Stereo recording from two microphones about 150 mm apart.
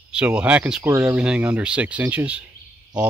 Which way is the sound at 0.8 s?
20° right (ahead or behind).